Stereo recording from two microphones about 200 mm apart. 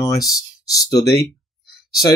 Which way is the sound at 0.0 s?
15° left (ahead or behind).